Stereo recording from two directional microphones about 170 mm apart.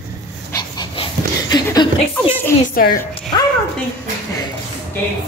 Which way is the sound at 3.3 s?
25° left (ahead or behind).